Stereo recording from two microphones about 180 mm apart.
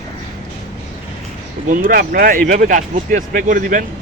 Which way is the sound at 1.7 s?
50° right (ahead or behind).